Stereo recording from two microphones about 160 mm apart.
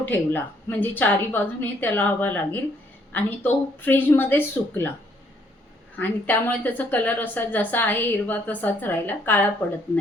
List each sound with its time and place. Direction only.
0.0 s a woman's voice: 10° left (ahead or behind)
6.0 s a woman's voice: 10° left (ahead or behind)